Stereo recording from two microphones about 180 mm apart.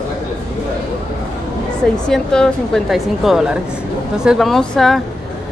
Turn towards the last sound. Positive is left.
turn(degrees=5)  # may be behind; listen again after turning